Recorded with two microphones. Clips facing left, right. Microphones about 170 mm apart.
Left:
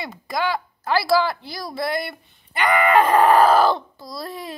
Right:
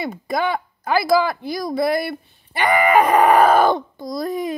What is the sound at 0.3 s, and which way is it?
Speech, 20° right (ahead or behind).